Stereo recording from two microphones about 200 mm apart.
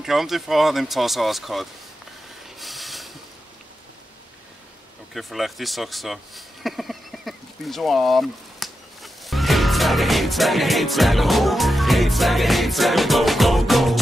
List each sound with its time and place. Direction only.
0.0 s speech: centre (ahead or behind)
2.6 s a sound: centre (ahead or behind)
5.1 s speech: centre (ahead or behind)